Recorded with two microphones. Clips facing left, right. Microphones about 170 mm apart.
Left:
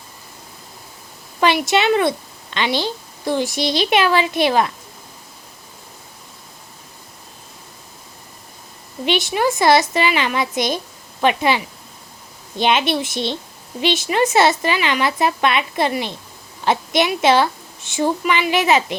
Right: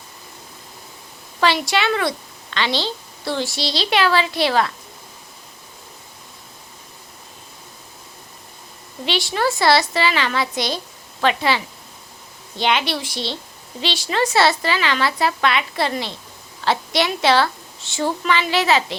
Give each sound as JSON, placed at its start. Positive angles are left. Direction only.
{"t": 1.4, "sound": "a woman's voice", "side_deg": 20}
{"t": 9.0, "sound": "a woman's voice", "side_deg": 20}